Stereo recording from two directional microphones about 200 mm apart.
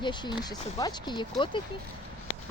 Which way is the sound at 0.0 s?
20° left (ahead or behind).